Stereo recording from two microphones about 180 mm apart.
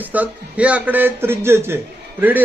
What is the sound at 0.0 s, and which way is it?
Speech, 10° right (ahead or behind).